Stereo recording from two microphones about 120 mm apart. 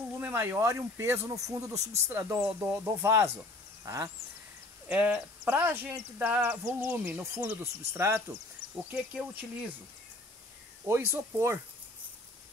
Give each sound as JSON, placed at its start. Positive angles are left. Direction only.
{"t": 0.2, "sound": "speech", "side_deg": -20}
{"t": 4.8, "sound": "speech", "side_deg": -15}
{"t": 8.9, "sound": "speech", "side_deg": -10}
{"t": 10.9, "sound": "speech", "side_deg": -20}